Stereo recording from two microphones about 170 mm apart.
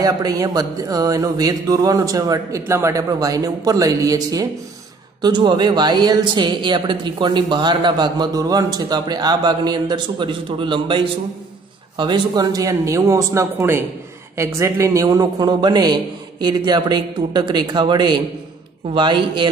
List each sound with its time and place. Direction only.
0.0 s speech: 20° right (ahead or behind)